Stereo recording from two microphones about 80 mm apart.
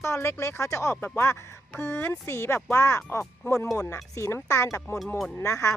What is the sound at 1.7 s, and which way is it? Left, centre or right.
Speech, centre.